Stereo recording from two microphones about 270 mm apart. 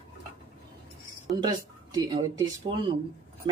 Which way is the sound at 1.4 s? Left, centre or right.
Centre.